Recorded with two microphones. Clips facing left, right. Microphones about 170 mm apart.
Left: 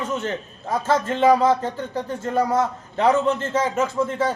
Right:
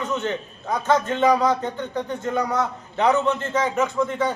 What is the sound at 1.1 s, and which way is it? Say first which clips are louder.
A man's voice: left 5 dB; 30° left (ahead or behind).